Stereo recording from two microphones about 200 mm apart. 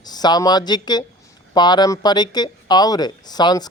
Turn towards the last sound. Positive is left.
turn(degrees=20)  # may be behind; listen again after turning